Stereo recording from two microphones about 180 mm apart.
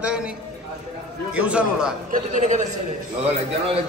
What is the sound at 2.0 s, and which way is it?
Speech, 45° right (ahead or behind).